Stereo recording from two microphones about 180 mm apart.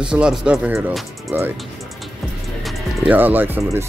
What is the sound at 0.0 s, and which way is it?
Speech, 5° right (ahead or behind).